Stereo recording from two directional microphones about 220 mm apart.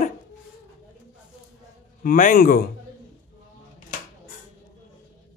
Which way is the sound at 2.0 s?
40° left (ahead or behind).